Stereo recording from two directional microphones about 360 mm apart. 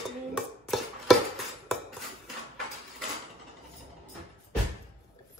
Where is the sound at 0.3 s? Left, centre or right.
Centre.